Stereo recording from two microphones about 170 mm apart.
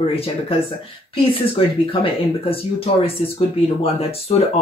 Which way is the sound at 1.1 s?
30° left (ahead or behind).